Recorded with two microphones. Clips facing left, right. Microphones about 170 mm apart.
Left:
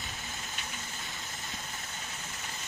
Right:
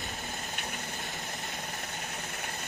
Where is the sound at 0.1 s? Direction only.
50° right (ahead or behind).